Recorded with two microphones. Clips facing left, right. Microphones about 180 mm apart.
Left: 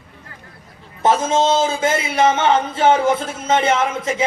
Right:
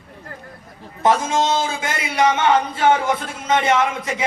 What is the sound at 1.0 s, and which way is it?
A man's voice, 25° left (ahead or behind).